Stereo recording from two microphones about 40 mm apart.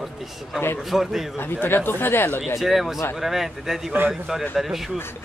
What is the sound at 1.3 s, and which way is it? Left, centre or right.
Speech, left.